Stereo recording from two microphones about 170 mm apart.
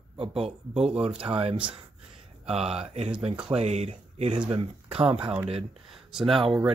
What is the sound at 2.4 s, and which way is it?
Speech, 35° right (ahead or behind).